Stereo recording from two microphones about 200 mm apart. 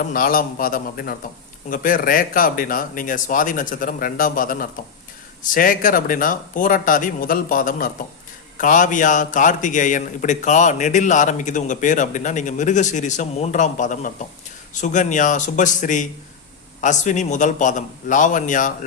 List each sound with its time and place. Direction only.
0.0 s a man's voice: 45° left (ahead or behind)